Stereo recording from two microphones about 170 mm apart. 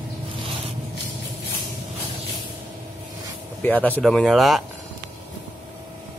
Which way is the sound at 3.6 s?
10° left (ahead or behind).